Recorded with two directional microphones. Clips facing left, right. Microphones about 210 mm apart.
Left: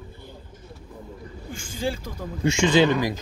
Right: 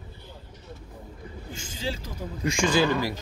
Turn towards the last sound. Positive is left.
turn(degrees=20)  # may be behind; listen again after turning